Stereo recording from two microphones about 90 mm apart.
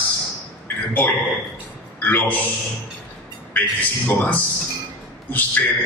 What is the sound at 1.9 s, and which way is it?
Speech, 20° left (ahead or behind).